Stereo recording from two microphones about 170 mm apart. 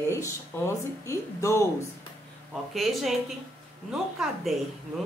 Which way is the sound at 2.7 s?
Centre (ahead or behind).